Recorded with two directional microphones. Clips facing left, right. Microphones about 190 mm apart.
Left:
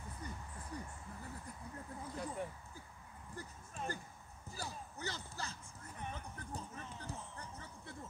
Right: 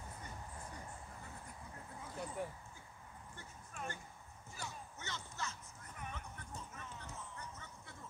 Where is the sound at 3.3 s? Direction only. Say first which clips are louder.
Left 4 dB; 35° left (ahead or behind).